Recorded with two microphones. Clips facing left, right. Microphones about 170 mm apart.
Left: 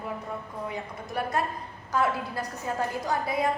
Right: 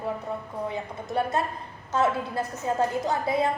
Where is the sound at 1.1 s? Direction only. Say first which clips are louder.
Right 3 dB; 25° right (ahead or behind).